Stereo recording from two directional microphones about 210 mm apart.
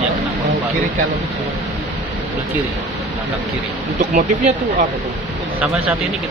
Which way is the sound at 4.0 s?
35° right (ahead or behind).